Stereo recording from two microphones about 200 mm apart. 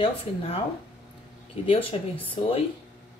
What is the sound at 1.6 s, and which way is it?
Speech, 25° left (ahead or behind).